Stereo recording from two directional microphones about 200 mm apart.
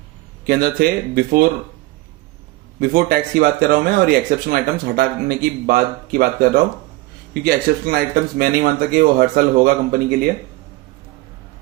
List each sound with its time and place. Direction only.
0.4 s speech: 50° right (ahead or behind)
2.8 s speech: 45° right (ahead or behind)